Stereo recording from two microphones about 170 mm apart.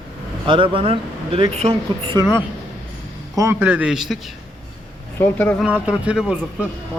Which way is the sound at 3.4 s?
15° right (ahead or behind).